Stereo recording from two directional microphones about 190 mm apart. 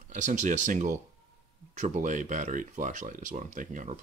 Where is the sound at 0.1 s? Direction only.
40° right (ahead or behind).